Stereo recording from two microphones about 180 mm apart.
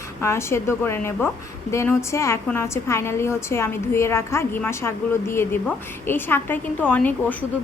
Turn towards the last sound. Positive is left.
turn(degrees=10)  # may be behind; listen again after turning